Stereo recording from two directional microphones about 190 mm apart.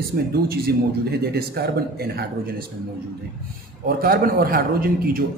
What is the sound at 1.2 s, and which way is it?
A man's voice, 55° right (ahead or behind).